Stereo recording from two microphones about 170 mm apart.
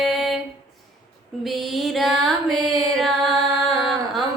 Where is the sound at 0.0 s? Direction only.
Centre (ahead or behind).